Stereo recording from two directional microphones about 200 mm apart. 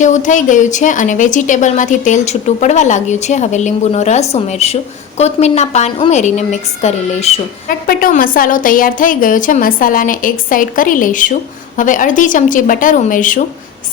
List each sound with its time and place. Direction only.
0.0 s speech: 40° left (ahead or behind)
7.9 s a woman's voice: 45° left (ahead or behind)